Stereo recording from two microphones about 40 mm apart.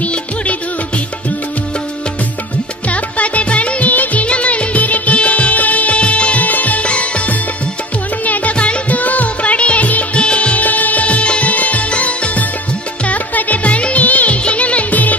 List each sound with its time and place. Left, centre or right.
0.0 s music: left
2.9 s music: left
10.6 s music: left